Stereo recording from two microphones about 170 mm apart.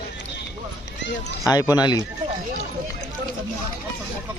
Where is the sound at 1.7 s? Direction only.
25° left (ahead or behind).